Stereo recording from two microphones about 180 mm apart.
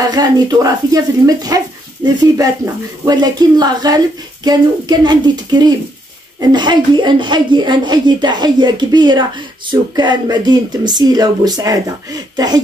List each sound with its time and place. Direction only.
0.0 s speech: 20° right (ahead or behind)